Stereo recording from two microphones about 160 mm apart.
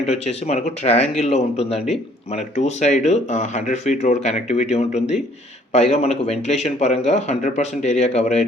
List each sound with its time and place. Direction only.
0.0 s speech: 40° left (ahead or behind)